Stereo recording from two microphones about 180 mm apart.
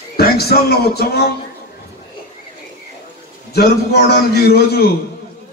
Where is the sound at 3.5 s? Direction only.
60° left (ahead or behind).